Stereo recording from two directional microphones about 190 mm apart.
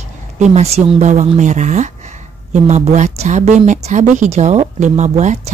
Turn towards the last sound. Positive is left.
turn(degrees=-35)  # may be behind; listen again after turning